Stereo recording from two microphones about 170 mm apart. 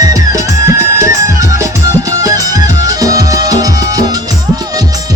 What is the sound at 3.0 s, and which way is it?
Music, 20° right (ahead or behind).